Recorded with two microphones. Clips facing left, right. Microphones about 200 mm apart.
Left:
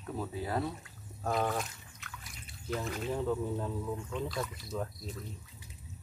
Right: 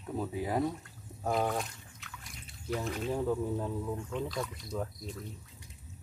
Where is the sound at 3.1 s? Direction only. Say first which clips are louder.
Right 1 dB; 10° right (ahead or behind).